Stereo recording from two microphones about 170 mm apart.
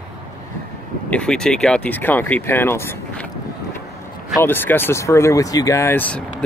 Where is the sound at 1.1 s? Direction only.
5° left (ahead or behind).